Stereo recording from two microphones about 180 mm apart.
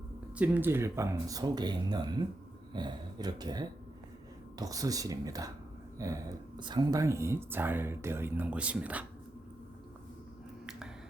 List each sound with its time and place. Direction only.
0.3 s speech: 10° right (ahead or behind)
10.7 s finger snapping: 5° right (ahead or behind)